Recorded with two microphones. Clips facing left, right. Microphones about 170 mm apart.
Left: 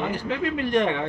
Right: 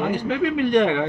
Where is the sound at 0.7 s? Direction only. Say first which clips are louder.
Right 3 dB; 65° right (ahead or behind).